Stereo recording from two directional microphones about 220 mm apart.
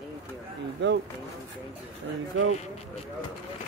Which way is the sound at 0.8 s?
55° right (ahead or behind).